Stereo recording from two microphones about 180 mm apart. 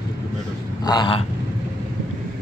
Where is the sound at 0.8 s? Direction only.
25° left (ahead or behind).